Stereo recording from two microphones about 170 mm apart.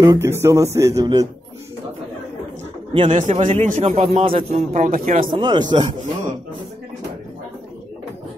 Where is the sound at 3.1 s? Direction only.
40° right (ahead or behind).